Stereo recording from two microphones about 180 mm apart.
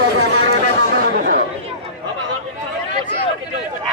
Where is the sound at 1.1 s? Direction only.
55° right (ahead or behind).